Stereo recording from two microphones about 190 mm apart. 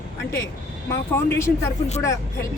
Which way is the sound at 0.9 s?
15° left (ahead or behind).